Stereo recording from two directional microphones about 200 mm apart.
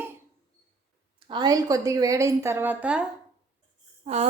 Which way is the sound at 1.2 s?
20° right (ahead or behind).